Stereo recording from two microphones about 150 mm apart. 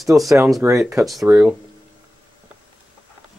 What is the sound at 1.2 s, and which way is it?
Speech, 10° right (ahead or behind).